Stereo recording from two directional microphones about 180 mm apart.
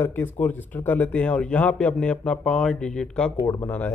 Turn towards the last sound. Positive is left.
turn(degrees=10)  # may be behind; listen again after turning